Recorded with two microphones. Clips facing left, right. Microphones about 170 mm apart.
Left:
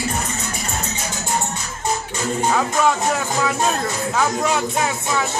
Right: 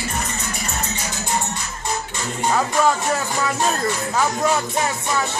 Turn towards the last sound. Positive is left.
turn(degrees=0)  # may be behind; listen again after turning